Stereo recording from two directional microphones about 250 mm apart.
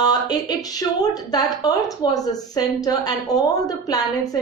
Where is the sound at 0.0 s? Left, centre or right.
Centre.